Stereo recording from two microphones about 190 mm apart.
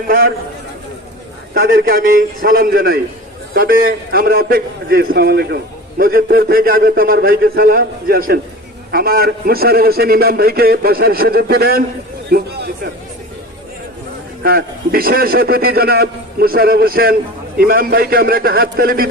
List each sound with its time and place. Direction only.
1.5 s a man's voice: 50° right (ahead or behind)
14.4 s a man's voice: 50° right (ahead or behind)